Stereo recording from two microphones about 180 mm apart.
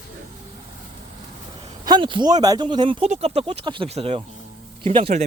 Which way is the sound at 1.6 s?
25° right (ahead or behind).